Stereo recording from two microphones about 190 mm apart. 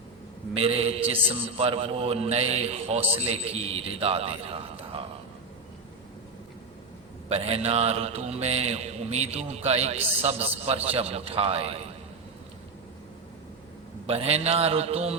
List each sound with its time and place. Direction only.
0.5 s a man's voice: 30° right (ahead or behind)
7.3 s a man's voice: 30° right (ahead or behind)
14.1 s a man's voice: 30° right (ahead or behind)